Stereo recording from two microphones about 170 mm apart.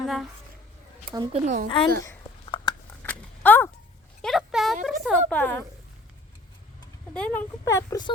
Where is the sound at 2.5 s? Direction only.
30° left (ahead or behind).